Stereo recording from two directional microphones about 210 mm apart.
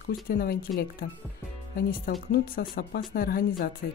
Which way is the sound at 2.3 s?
45° left (ahead or behind).